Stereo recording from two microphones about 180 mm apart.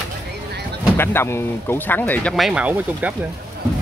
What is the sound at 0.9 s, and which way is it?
Speech, 15° left (ahead or behind).